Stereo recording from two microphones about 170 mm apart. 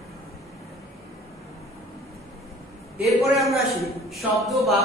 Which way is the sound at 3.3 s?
Centre (ahead or behind).